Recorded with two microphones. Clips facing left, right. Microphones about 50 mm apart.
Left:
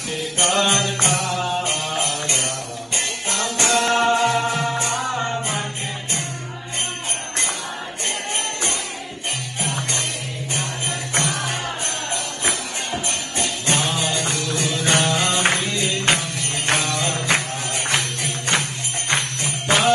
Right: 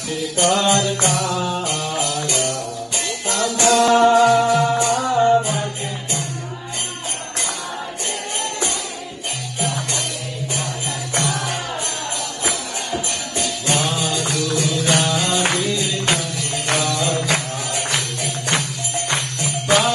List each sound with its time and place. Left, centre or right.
0.4 s music: left
9.6 s music: left
11.1 s music: left